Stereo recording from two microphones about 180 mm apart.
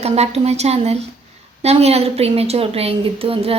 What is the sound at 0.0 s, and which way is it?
A woman's voice, 35° right (ahead or behind).